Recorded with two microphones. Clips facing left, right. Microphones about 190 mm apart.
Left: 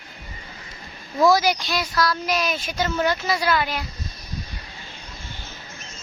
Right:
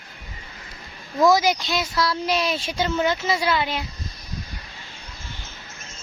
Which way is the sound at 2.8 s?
20° right (ahead or behind).